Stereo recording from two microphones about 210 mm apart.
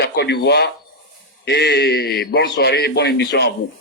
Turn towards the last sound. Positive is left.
turn(degrees=50)  # may be behind; listen again after turning